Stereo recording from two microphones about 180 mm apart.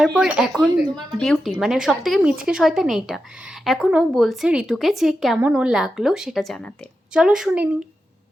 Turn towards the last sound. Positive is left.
turn(degrees=-5)  # may be behind; listen again after turning